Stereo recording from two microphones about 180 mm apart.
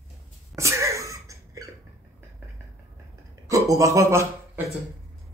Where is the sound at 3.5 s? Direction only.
15° right (ahead or behind).